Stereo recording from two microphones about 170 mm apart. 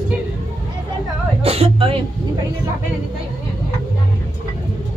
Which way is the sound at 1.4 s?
35° right (ahead or behind).